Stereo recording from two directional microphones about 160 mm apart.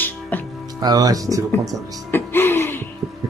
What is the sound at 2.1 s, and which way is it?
Music, 15° left (ahead or behind).